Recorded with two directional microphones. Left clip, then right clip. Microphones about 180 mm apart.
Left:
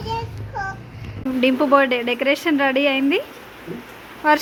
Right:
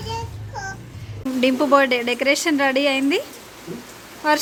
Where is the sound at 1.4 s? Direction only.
5° right (ahead or behind).